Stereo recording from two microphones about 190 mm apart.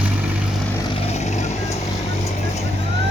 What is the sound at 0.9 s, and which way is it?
Vehicle, 35° left (ahead or behind).